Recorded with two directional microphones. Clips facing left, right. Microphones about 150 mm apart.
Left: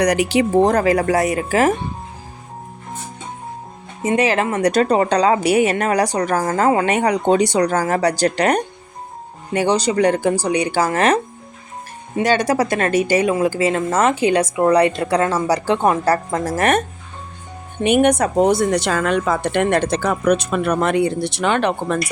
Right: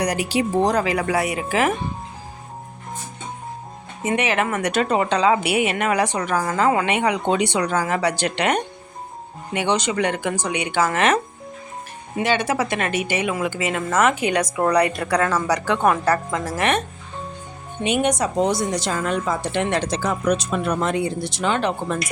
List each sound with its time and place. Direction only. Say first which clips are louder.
0.0 s speech: left 5 dB; 75° left (ahead or behind); by 1.7 s 40° left (ahead or behind)
4.0 s a woman's voice: left 4 dB; 35° left (ahead or behind)
12.2 s a woman's voice: left 4 dB; 40° left (ahead or behind)
17.8 s a woman's voice: left 6 dB; 55° left (ahead or behind)